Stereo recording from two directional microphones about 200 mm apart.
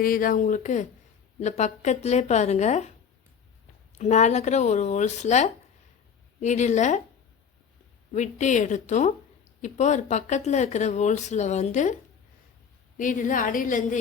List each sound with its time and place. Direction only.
0.0 s speech: 45° left (ahead or behind)
3.9 s speech: 35° left (ahead or behind)
8.1 s speech: 35° left (ahead or behind)
13.0 s speech: 40° left (ahead or behind)